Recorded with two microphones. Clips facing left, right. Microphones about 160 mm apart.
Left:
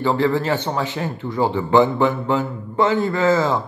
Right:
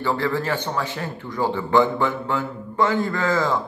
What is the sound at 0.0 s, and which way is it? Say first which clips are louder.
A man's voice: left 4 dB; 15° left (ahead or behind).